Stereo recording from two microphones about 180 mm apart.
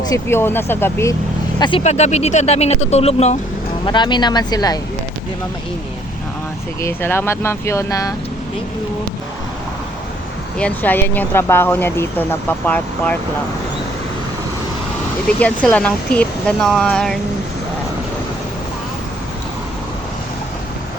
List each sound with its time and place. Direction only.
0.0 s speech: 15° left (ahead or behind)
1.5 s speech: 25° left (ahead or behind)
1.8 s speech: 40° left (ahead or behind)
3.8 s speech: 25° left (ahead or behind)
6.8 s speech: 10° left (ahead or behind)
10.6 s speech: 10° left (ahead or behind)
15.4 s speech: 5° left (ahead or behind)